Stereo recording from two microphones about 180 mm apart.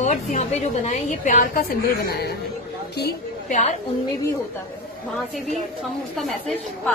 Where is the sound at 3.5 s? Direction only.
40° left (ahead or behind).